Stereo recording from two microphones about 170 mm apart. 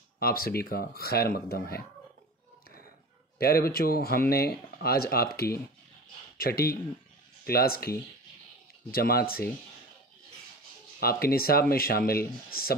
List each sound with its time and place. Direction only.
0.2 s speech: 60° left (ahead or behind)
3.3 s speech: 65° left (ahead or behind)
11.0 s speech: 65° left (ahead or behind)